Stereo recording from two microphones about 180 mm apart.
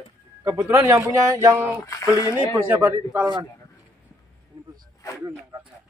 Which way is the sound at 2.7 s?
10° right (ahead or behind).